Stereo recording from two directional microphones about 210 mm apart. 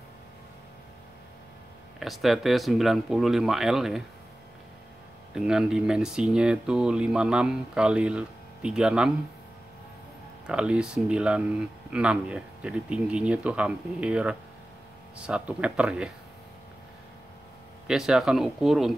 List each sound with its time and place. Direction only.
2.0 s speech: centre (ahead or behind)
5.3 s speech: 5° right (ahead or behind)
10.4 s speech: 5° right (ahead or behind)
17.8 s speech: centre (ahead or behind)